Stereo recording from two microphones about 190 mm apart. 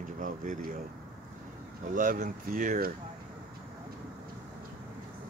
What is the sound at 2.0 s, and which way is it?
Speech, 45° right (ahead or behind).